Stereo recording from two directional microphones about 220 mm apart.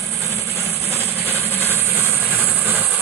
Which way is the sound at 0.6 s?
10° right (ahead or behind).